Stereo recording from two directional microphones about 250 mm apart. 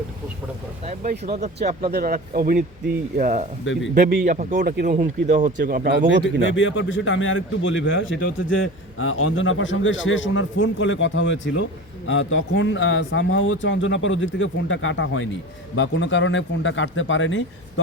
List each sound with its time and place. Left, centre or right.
1.2 s speech: right
6.5 s a man's voice: left